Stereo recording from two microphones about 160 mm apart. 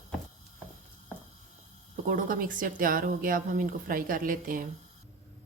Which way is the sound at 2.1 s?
60° right (ahead or behind).